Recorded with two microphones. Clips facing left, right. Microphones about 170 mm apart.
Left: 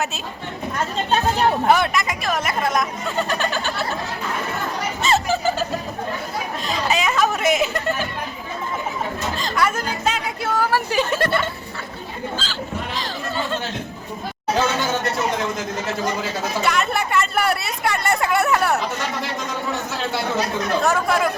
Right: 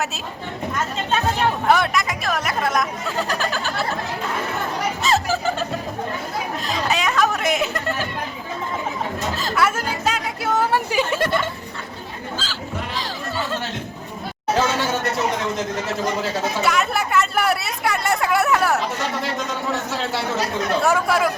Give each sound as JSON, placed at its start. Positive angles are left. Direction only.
{"t": 0.9, "sound": "a sound", "side_deg": 35}
{"t": 1.6, "sound": "speech", "side_deg": 0}
{"t": 5.0, "sound": "a sound", "side_deg": 0}
{"t": 6.7, "sound": "chatter", "side_deg": 0}
{"t": 9.4, "sound": "chatter", "side_deg": -5}
{"t": 10.5, "sound": "a sound", "side_deg": -20}
{"t": 13.0, "sound": "chatter", "side_deg": -10}
{"t": 16.6, "sound": "chatter", "side_deg": -5}
{"t": 20.8, "sound": "speech", "side_deg": -5}